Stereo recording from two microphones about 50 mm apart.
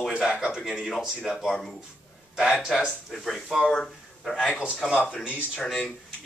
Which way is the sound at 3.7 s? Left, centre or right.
Centre.